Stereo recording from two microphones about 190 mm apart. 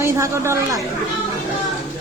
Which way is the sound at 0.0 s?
15° right (ahead or behind).